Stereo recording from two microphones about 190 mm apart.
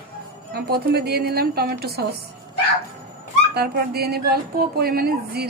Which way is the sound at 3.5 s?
55° right (ahead or behind).